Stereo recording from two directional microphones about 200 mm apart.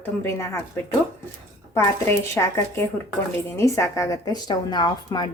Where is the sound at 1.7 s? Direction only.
15° left (ahead or behind).